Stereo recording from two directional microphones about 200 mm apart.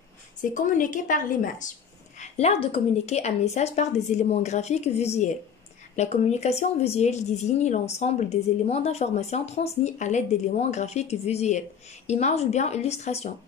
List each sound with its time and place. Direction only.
0.4 s a woman's voice: 40° left (ahead or behind)